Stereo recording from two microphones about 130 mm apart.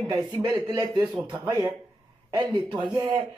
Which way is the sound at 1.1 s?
10° right (ahead or behind).